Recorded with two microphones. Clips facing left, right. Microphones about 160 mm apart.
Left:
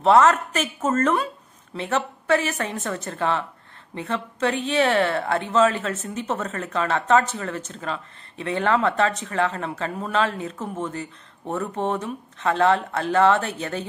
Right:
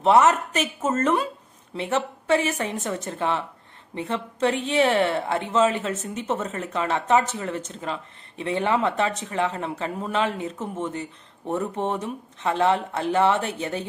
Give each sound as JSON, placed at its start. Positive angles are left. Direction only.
{"t": 0.0, "sound": "a woman's voice", "side_deg": -15}